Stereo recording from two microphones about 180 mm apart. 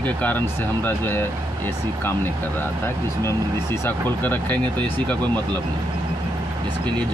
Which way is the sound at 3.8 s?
10° left (ahead or behind).